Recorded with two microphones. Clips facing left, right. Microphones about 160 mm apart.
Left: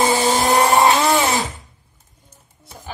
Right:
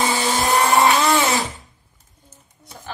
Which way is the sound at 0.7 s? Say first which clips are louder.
Left 1 dB; 20° left (ahead or behind).